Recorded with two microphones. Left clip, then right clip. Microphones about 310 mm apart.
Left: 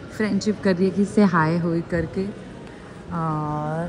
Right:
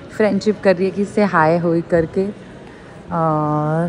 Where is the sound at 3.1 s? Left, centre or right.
Right.